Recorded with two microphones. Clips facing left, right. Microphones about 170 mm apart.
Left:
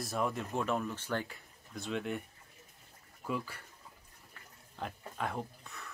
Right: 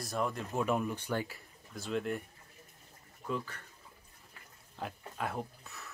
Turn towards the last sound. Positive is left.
turn(degrees=-5)  # may be behind; listen again after turning